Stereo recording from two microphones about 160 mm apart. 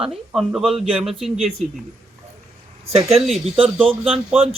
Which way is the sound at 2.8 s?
40° right (ahead or behind).